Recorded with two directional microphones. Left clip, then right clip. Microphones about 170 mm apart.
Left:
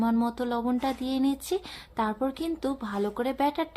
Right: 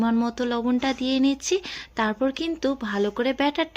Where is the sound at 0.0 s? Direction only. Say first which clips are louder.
Right 3 dB; 15° right (ahead or behind).